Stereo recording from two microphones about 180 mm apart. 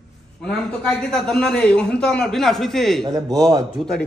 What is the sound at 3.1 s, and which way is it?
Speech, 20° right (ahead or behind).